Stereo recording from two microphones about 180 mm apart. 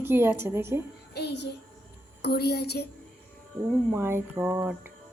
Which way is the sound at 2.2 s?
65° left (ahead or behind).